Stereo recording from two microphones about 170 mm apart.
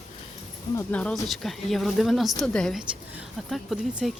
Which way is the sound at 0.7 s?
10° left (ahead or behind).